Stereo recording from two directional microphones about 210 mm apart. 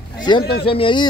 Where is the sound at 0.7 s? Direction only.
25° left (ahead or behind).